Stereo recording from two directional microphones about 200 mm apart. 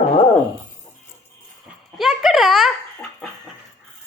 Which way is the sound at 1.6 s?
Centre (ahead or behind).